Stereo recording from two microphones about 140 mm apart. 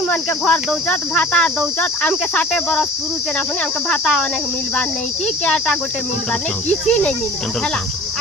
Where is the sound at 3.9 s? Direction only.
5° left (ahead or behind).